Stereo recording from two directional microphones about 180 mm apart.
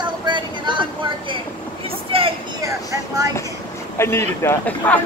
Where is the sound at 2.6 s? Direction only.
20° right (ahead or behind).